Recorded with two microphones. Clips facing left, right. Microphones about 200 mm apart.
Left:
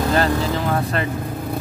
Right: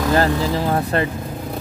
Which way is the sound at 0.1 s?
30° right (ahead or behind).